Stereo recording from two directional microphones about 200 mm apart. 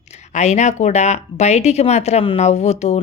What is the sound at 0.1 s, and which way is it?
A woman's voice, 35° left (ahead or behind).